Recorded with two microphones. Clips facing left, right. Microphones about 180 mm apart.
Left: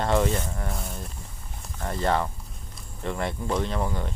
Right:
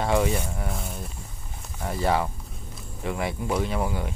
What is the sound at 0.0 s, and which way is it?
Speech, 5° right (ahead or behind).